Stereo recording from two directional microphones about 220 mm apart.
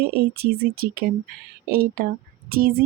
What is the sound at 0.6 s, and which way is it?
Speech, 45° right (ahead or behind).